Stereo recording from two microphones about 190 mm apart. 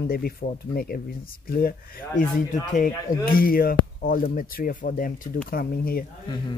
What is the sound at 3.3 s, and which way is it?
Speech, 50° left (ahead or behind).